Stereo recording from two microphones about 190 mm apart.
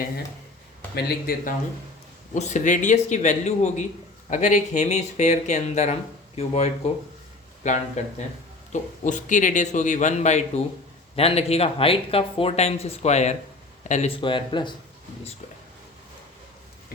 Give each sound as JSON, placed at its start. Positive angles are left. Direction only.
{"t": 0.9, "sound": "speech", "side_deg": 55}
{"t": 2.3, "sound": "speech", "side_deg": 40}
{"t": 14.2, "sound": "speech", "side_deg": 25}